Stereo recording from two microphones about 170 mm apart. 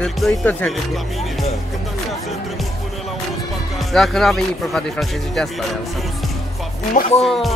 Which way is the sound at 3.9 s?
Centre (ahead or behind).